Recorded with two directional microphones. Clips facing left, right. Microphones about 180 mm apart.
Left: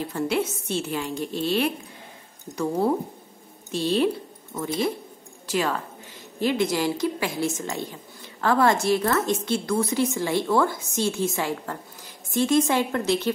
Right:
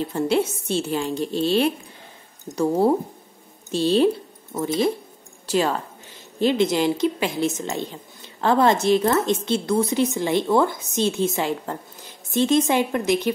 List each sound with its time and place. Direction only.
0.0 s a woman's voice: 30° right (ahead or behind)
5.5 s a woman's voice: 30° right (ahead or behind)